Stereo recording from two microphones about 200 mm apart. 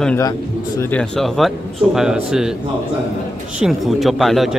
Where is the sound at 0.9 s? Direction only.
5° left (ahead or behind).